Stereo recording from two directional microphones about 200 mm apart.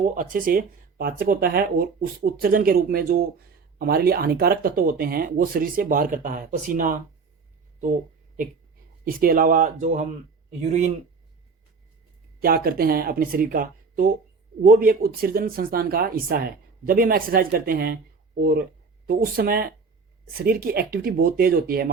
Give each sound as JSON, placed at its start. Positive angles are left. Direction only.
{"t": 0.1, "sound": "speech", "side_deg": -45}
{"t": 9.0, "sound": "speech", "side_deg": -45}
{"t": 12.4, "sound": "speech", "side_deg": -45}